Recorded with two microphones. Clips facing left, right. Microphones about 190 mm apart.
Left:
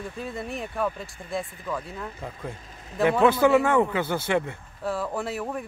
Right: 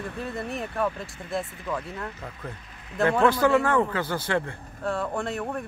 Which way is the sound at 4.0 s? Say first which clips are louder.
Left 2 dB; 25° left (ahead or behind).